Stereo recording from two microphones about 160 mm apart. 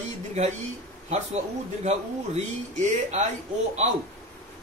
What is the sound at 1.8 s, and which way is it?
Speech, 45° right (ahead or behind).